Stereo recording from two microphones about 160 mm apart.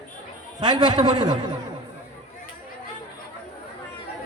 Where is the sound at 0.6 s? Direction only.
25° right (ahead or behind).